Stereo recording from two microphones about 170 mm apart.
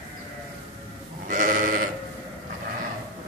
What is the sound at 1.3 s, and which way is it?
Sheep, 50° right (ahead or behind).